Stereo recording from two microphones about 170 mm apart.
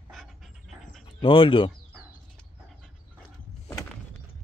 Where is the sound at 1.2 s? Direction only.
30° left (ahead or behind).